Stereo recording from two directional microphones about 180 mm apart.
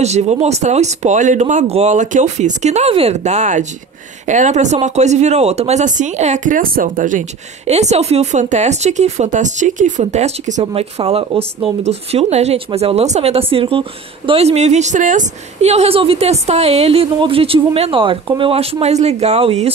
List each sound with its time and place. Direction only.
0.0 s speech: 40° right (ahead or behind)